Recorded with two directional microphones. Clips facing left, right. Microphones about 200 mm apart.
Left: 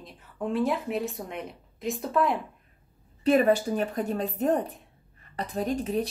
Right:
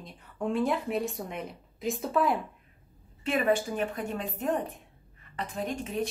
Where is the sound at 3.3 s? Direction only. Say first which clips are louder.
Left 5 dB; 40° left (ahead or behind).